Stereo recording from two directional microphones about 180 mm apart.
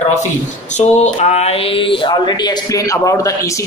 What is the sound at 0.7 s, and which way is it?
Speech, 40° left (ahead or behind).